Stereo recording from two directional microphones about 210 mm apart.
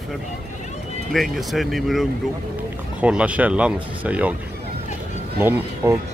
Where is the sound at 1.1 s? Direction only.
Centre (ahead or behind).